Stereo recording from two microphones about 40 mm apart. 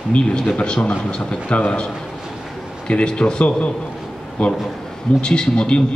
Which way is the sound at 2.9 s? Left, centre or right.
Left.